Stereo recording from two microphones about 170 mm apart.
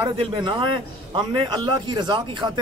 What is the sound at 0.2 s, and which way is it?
A man's voice, 30° right (ahead or behind).